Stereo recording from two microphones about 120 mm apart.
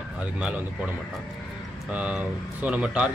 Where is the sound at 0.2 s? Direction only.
10° right (ahead or behind).